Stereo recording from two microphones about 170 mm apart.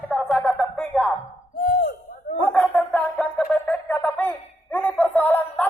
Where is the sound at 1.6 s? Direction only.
60° left (ahead or behind).